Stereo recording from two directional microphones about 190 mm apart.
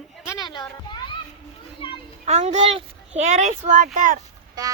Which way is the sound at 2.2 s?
35° right (ahead or behind).